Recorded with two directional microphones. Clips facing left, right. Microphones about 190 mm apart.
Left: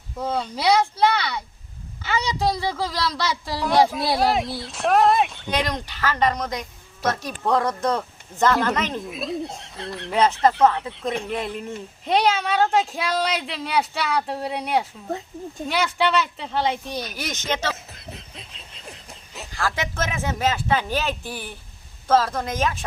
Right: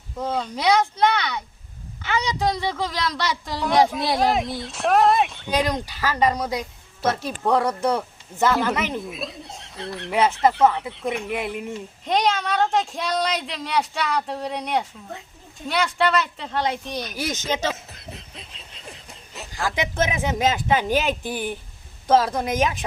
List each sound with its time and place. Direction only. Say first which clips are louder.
0.2 s a man's voice: even; 5° left (ahead or behind)
2.4 s a man's voice: even; 5° left (ahead or behind)
5.5 s a man's voice: right 2 dB; 10° right (ahead or behind)
12.0 s a man's voice: left 1 dB; 5° left (ahead or behind)
17.2 s speech: right 4 dB; 10° right (ahead or behind)
17.9 s snicker: even; centre (ahead or behind)
19.5 s speech: right 3 dB; 15° right (ahead or behind)